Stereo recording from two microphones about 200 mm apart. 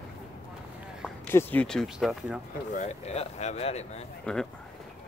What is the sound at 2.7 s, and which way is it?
Speech, 35° left (ahead or behind).